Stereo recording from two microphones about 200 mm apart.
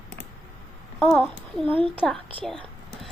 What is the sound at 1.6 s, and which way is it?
Speech, 25° right (ahead or behind).